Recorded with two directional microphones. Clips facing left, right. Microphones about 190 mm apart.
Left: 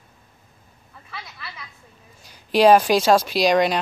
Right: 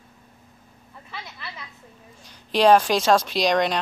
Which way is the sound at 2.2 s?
10° left (ahead or behind).